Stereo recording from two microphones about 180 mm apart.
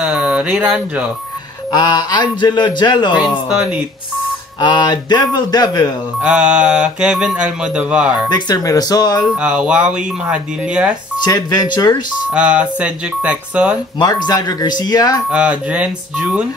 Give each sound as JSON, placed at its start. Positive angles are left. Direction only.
{"t": 0.0, "sound": "speech", "side_deg": -5}
{"t": 1.7, "sound": "a man's voice", "side_deg": 25}
{"t": 3.4, "sound": "mantra", "side_deg": -5}
{"t": 4.6, "sound": "a man's voice", "side_deg": 25}
{"t": 6.2, "sound": "mantra", "side_deg": -5}
{"t": 8.3, "sound": "a man's voice", "side_deg": 20}
{"t": 9.4, "sound": "mantra", "side_deg": -5}
{"t": 11.2, "sound": "a man's voice", "side_deg": 25}
{"t": 12.4, "sound": "speech", "side_deg": -5}
{"t": 13.9, "sound": "a man's voice", "side_deg": 20}
{"t": 15.3, "sound": "speech", "side_deg": -5}